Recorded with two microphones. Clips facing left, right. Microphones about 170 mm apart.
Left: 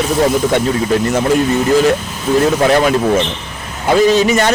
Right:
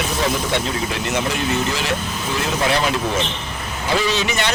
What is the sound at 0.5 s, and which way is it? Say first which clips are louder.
Speech: left 9 dB; 45° left (ahead or behind).